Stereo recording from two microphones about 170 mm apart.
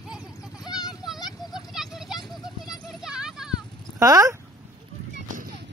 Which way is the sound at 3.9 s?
20° right (ahead or behind).